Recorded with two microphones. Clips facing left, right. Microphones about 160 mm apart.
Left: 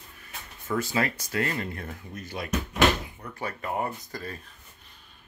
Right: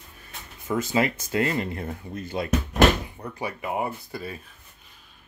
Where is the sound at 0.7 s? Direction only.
20° right (ahead or behind).